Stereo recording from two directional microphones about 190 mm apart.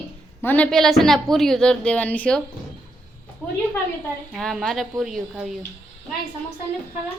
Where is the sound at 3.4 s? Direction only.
10° left (ahead or behind).